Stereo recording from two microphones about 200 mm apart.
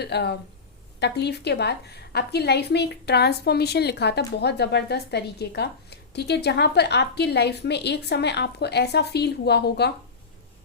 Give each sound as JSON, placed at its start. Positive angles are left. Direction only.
{"t": 0.0, "sound": "a woman's voice", "side_deg": 55}